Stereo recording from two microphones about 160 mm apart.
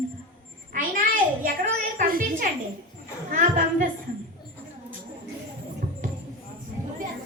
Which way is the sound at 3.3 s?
60° right (ahead or behind).